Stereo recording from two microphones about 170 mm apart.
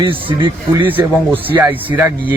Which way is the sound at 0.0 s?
30° right (ahead or behind).